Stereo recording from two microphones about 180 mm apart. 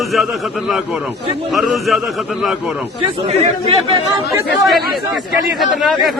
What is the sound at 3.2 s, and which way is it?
Speech, 30° right (ahead or behind).